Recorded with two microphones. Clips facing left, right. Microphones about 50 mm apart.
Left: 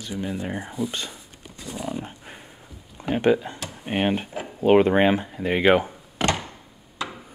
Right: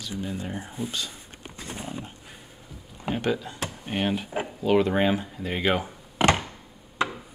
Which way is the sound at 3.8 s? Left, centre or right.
Left.